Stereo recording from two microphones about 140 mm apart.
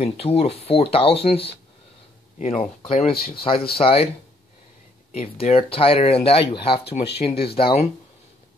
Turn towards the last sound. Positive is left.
turn(degrees=40)  # may be behind; listen again after turning